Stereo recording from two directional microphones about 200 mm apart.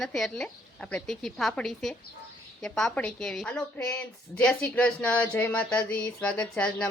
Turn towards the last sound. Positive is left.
turn(degrees=5)  # may be behind; listen again after turning